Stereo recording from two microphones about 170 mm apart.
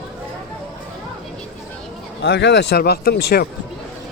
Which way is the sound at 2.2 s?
90° left.